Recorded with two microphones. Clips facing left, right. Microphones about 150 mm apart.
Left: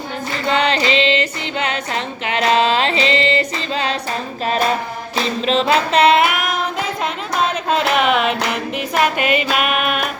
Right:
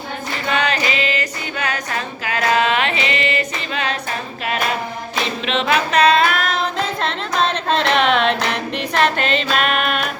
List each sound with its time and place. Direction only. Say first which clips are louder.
0.4 s female singing: left 3 dB; 30° left (ahead or behind)
5.1 s female singing: left 4 dB; 30° left (ahead or behind); by 10.1 s 5° left (ahead or behind)